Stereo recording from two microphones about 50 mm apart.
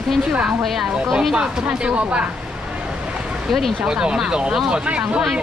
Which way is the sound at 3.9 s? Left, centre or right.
Centre.